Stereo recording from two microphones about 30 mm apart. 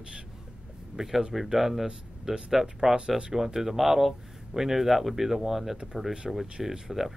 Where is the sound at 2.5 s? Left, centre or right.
Centre.